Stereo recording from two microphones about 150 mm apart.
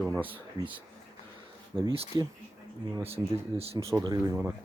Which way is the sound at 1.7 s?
15° right (ahead or behind).